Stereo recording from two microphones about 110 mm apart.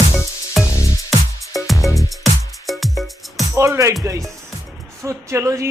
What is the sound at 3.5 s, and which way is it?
Speech, 25° right (ahead or behind).